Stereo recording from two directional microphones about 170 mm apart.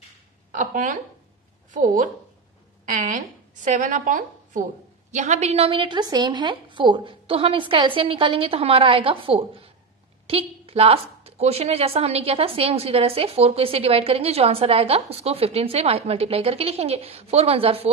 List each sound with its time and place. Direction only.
0.5 s a woman's voice: 50° right (ahead or behind); by 17.8 s 35° right (ahead or behind)